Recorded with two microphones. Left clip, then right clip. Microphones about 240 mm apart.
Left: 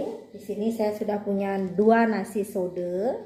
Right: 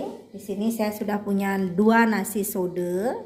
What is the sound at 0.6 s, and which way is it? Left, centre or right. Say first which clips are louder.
A woman's voice: left 1 dB; right.